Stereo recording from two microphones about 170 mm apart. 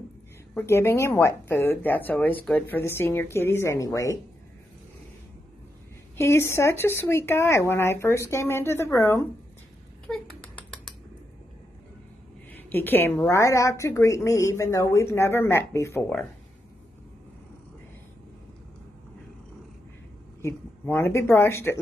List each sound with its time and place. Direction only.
0.6 s speech: 15° left (ahead or behind)
6.1 s speech: 15° left (ahead or behind)
10.0 s a sound: 5° left (ahead or behind)
12.5 s speech: 10° left (ahead or behind)
20.4 s speech: 15° left (ahead or behind)